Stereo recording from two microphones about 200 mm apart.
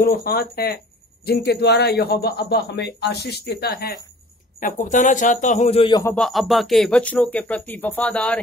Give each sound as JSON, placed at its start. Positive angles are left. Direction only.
{"t": 0.0, "sound": "speech", "side_deg": 50}
{"t": 4.6, "sound": "a man's voice", "side_deg": 40}
{"t": 6.0, "sound": "speech", "side_deg": 5}